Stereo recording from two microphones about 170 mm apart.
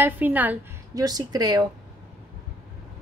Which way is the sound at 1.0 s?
20° right (ahead or behind).